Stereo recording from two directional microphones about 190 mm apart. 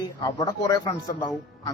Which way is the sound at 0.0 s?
20° left (ahead or behind).